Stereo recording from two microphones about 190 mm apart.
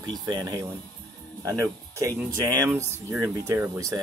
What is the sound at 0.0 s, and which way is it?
Speech, 20° right (ahead or behind).